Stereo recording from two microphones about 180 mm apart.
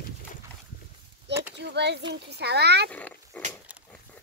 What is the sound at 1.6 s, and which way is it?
A child's voice, 70° right (ahead or behind).